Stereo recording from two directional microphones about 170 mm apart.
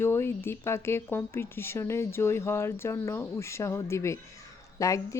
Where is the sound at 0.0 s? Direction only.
15° left (ahead or behind).